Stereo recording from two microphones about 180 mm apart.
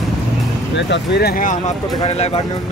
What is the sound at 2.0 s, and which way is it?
Speech, 35° left (ahead or behind).